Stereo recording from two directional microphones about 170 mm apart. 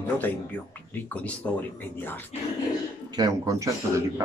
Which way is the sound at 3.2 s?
20° right (ahead or behind).